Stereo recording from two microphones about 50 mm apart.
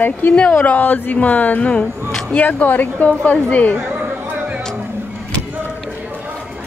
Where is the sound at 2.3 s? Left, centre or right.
Left.